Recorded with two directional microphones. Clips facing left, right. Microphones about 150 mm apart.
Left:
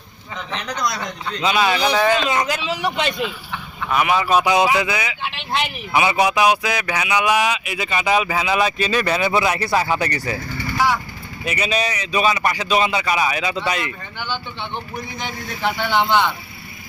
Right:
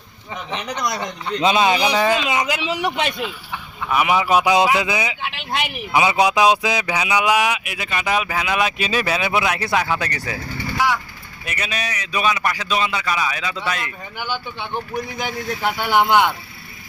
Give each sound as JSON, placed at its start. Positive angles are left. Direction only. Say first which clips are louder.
{"t": 0.5, "sound": "speech", "louder": "even", "side_deg": -20}
{"t": 5.2, "sound": "speech", "louder": "left 1 dB", "side_deg": -5}
{"t": 6.0, "sound": "speech", "louder": "right 1 dB", "side_deg": -20}
{"t": 8.8, "sound": "speech", "louder": "left 2 dB", "side_deg": -10}
{"t": 11.4, "sound": "speech", "louder": "left 6 dB", "side_deg": 5}
{"t": 14.2, "sound": "speech", "louder": "right 1 dB", "side_deg": -10}